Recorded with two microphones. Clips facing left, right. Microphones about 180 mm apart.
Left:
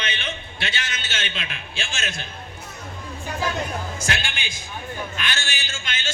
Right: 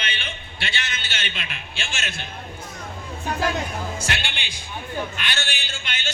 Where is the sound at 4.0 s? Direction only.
45° left (ahead or behind).